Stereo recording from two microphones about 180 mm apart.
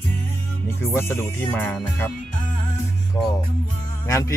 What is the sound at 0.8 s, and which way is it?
Music, 15° left (ahead or behind).